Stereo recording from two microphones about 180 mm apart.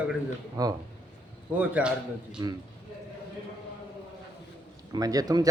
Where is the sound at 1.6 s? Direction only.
5° right (ahead or behind).